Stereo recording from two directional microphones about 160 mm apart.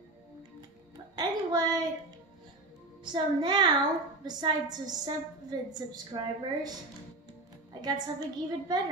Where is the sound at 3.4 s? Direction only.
25° right (ahead or behind).